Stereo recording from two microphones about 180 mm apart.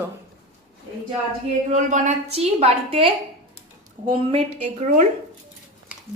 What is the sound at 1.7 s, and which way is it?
A woman's voice, 40° right (ahead or behind).